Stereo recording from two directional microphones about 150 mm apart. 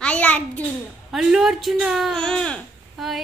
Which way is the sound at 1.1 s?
5° right (ahead or behind).